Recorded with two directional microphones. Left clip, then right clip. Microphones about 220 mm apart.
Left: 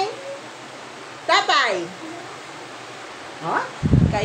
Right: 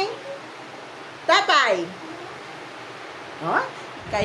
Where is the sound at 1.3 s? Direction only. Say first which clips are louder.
Even; 15° right (ahead or behind).